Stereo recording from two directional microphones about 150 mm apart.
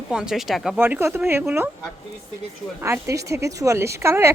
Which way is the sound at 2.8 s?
15° right (ahead or behind).